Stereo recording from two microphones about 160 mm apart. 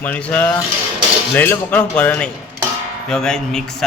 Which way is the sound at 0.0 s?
10° left (ahead or behind).